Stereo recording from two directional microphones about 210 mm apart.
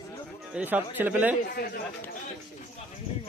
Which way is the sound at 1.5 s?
45° left (ahead or behind).